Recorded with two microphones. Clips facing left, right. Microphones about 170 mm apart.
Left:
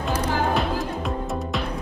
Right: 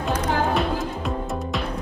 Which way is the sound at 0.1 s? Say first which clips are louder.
Right 1 dB; centre (ahead or behind).